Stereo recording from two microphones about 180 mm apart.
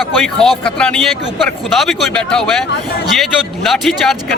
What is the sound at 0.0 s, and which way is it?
A man's voice, centre (ahead or behind).